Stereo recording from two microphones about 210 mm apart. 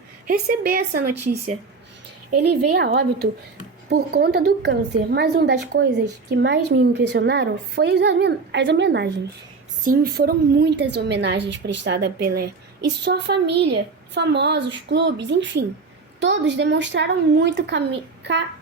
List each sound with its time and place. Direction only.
0.3 s a woman's voice: 45° right (ahead or behind)
2.7 s a woman's voice: 50° right (ahead or behind)
9.8 s a woman's voice: 45° right (ahead or behind)